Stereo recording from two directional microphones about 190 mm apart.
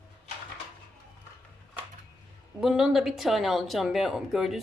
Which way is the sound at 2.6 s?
5° right (ahead or behind).